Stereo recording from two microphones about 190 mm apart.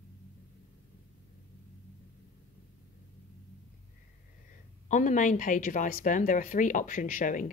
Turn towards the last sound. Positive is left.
turn(degrees=45)  # may be behind; listen again after turning